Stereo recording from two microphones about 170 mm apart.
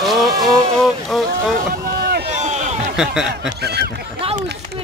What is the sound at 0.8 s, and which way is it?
Boat, centre (ahead or behind).